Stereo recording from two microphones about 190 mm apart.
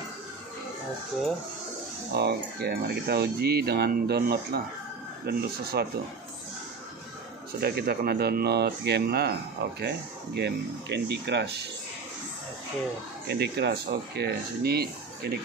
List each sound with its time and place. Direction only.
2.1 s speech: 60° right (ahead or behind)
7.6 s speech: 55° right (ahead or behind)
13.3 s speech: 60° right (ahead or behind)